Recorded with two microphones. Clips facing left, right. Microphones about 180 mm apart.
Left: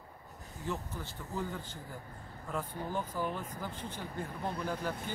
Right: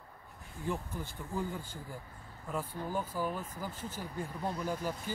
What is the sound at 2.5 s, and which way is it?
Speech, 10° right (ahead or behind).